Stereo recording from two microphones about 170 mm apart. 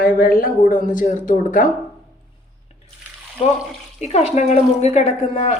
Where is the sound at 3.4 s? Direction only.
35° left (ahead or behind).